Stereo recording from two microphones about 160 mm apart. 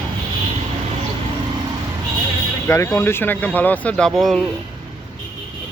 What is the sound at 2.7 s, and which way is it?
Speech, 15° left (ahead or behind).